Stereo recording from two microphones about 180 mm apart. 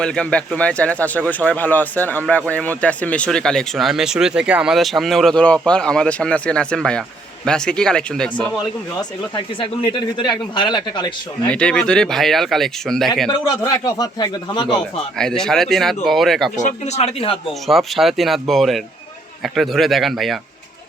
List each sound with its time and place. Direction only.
0.0 s speech: 5° left (ahead or behind)
9.0 s speech: 25° left (ahead or behind)
11.4 s speech: 5° left (ahead or behind)
13.4 s speech: 20° left (ahead or behind)
15.2 s speech: 5° left (ahead or behind)
16.6 s speech: 40° left (ahead or behind)
17.7 s speech: centre (ahead or behind)